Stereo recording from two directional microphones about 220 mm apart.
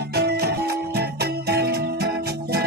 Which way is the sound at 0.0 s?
45° right (ahead or behind).